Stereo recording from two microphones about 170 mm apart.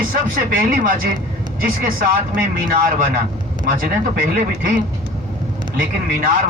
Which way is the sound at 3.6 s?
55° right (ahead or behind).